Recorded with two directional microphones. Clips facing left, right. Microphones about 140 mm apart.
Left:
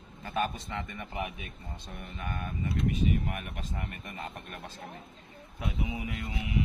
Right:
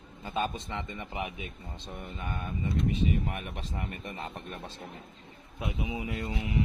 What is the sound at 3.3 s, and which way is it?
Speech, 30° right (ahead or behind).